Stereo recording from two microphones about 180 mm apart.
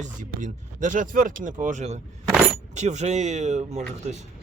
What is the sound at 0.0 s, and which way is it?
Speech, 45° right (ahead or behind).